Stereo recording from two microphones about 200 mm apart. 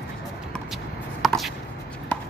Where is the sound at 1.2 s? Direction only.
Centre (ahead or behind).